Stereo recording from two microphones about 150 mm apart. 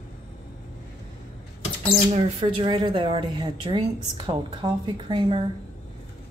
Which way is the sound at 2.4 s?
35° right (ahead or behind).